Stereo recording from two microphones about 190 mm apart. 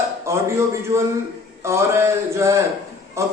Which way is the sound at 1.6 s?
15° right (ahead or behind).